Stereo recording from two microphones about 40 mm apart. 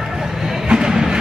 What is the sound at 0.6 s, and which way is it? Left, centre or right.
Music, centre.